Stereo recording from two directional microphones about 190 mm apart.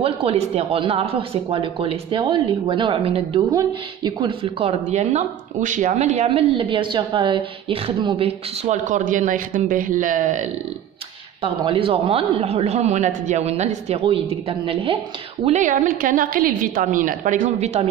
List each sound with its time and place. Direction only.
0.0 s a woman's voice: 30° right (ahead or behind)
11.4 s a woman's voice: 30° right (ahead or behind)
15.4 s a woman's voice: 40° right (ahead or behind)